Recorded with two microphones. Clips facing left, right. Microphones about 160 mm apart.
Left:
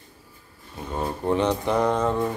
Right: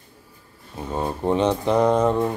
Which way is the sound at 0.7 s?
20° right (ahead or behind).